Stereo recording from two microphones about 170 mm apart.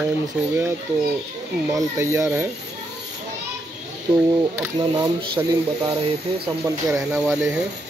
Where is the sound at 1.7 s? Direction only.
20° right (ahead or behind).